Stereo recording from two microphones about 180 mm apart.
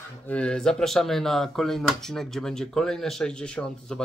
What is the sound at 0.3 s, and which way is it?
Speech, 5° left (ahead or behind).